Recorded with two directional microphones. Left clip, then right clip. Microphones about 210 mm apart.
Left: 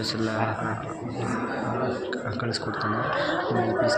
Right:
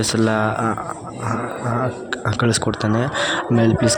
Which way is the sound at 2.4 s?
50° right (ahead or behind).